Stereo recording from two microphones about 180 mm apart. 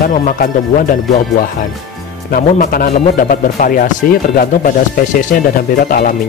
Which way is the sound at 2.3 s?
50° left (ahead or behind).